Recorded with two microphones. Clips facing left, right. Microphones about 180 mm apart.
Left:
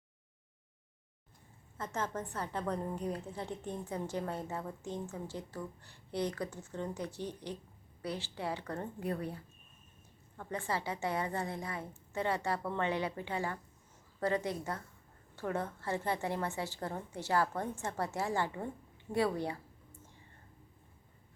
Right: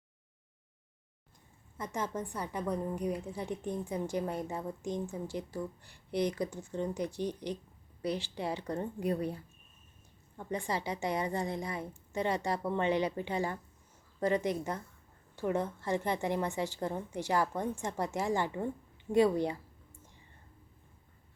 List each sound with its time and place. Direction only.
1.8 s a woman's voice: 10° right (ahead or behind)
10.3 s a woman's voice: 15° right (ahead or behind)